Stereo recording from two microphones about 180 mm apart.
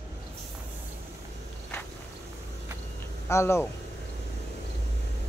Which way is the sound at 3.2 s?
15° left (ahead or behind).